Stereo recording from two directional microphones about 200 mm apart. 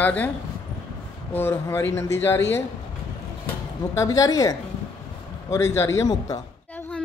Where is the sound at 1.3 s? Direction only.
10° left (ahead or behind).